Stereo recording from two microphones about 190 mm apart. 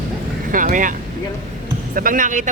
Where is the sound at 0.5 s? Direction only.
45° right (ahead or behind).